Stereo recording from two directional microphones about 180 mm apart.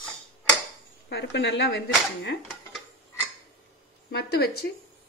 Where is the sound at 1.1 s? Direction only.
70° left (ahead or behind).